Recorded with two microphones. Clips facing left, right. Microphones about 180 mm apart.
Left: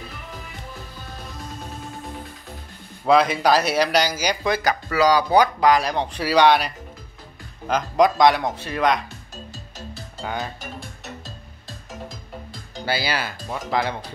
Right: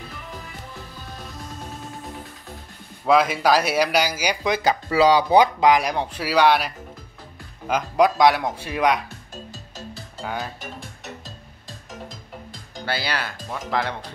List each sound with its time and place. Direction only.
3.1 s speech: 5° right (ahead or behind)
4.5 s speech: 20° right (ahead or behind)
10.2 s speech: 5° right (ahead or behind)
12.8 s speech: 5° left (ahead or behind)